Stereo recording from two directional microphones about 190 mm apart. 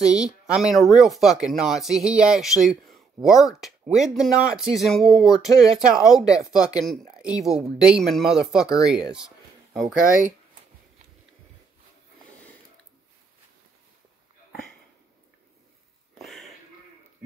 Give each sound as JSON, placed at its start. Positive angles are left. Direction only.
{"t": 0.0, "sound": "speech", "side_deg": -5}
{"t": 6.2, "sound": "speech", "side_deg": 20}
{"t": 6.8, "sound": "speech", "side_deg": 0}
{"t": 16.2, "sound": "a sound", "side_deg": 0}